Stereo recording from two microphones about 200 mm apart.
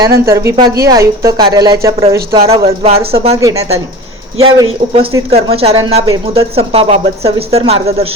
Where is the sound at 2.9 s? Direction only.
50° right (ahead or behind).